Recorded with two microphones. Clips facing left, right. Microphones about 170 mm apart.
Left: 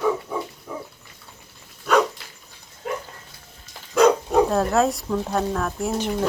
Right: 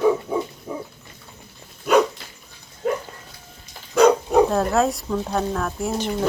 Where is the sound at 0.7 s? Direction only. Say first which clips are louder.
Right 3 dB; 20° right (ahead or behind).